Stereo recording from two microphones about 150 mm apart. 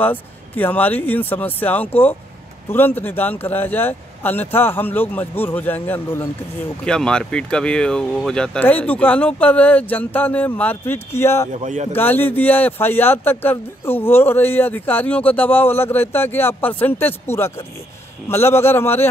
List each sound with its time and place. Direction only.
0.0 s speech: 10° left (ahead or behind)
11.5 s speech: 50° right (ahead or behind)
11.9 s speech: 15° left (ahead or behind)